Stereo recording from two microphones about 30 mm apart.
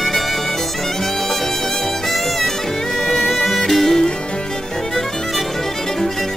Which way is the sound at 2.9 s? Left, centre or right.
Centre.